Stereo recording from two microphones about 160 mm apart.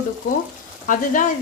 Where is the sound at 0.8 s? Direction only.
55° left (ahead or behind).